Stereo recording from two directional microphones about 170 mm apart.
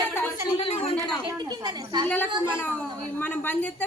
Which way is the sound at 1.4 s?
25° right (ahead or behind).